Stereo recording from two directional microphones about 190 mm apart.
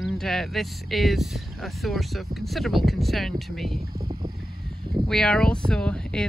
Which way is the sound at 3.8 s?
50° right (ahead or behind).